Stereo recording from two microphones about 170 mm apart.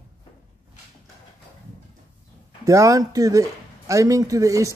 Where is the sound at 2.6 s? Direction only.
20° right (ahead or behind).